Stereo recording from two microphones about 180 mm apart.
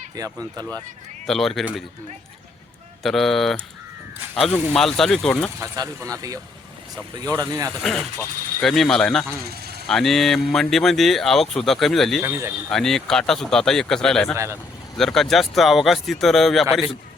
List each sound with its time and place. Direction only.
0.2 s speech: 20° right (ahead or behind)
1.3 s speech: centre (ahead or behind)
3.0 s speech: centre (ahead or behind)
5.5 s speech: 20° right (ahead or behind)
7.8 s speech: centre (ahead or behind)
12.2 s speech: 15° right (ahead or behind)
12.7 s speech: 5° left (ahead or behind)
14.3 s speech: 15° right (ahead or behind)
14.9 s speech: centre (ahead or behind)